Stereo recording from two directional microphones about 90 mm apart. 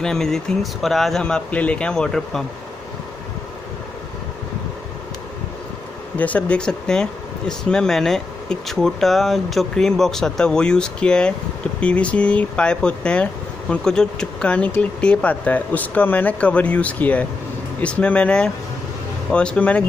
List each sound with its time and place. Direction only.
0.0 s speech: 5° left (ahead or behind)
6.1 s speech: 15° left (ahead or behind)